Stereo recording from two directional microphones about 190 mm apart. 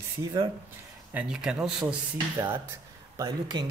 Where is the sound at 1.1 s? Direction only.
5° right (ahead or behind).